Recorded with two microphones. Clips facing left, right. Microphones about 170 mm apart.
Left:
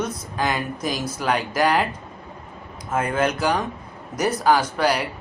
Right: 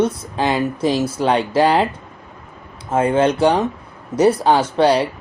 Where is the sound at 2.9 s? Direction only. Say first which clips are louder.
Right 7 dB; 30° right (ahead or behind).